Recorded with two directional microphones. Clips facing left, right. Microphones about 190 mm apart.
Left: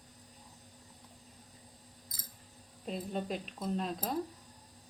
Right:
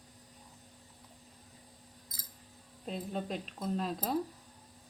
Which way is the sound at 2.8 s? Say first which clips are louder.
Even; centre (ahead or behind).